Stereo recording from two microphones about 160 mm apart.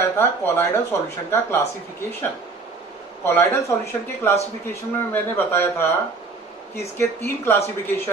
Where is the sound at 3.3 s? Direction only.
15° left (ahead or behind).